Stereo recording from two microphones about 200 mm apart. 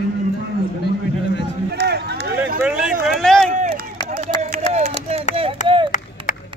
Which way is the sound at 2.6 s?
5° right (ahead or behind).